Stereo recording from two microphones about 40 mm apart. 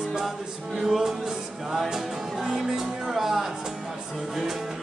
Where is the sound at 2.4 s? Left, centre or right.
Centre.